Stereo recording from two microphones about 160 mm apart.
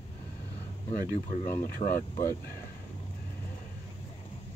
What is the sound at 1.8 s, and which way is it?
Speech, 60° left (ahead or behind).